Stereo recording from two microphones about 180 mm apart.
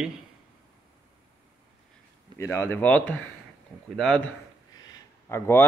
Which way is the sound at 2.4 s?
15° left (ahead or behind).